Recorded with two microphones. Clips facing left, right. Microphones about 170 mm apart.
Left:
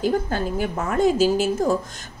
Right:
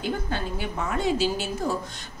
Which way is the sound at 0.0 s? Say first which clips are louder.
Left 7 dB; 45° left (ahead or behind).